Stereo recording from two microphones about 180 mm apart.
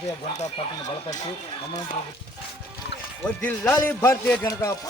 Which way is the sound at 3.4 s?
10° left (ahead or behind).